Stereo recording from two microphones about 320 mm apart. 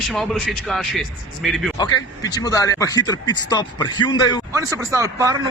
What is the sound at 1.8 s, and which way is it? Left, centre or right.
Speech, centre.